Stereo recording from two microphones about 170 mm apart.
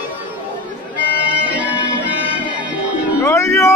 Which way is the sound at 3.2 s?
15° left (ahead or behind).